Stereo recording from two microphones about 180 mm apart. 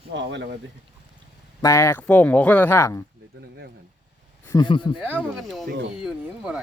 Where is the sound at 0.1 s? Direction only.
80° right.